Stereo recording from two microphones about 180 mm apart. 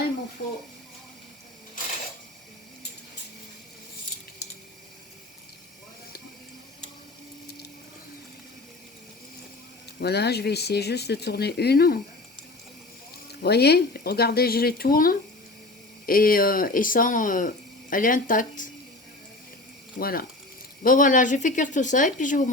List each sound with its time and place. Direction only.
10.0 s speech: 65° left (ahead or behind)
13.4 s speech: 65° left (ahead or behind); by 18.7 s 45° left (ahead or behind)
20.0 s speech: 55° left (ahead or behind)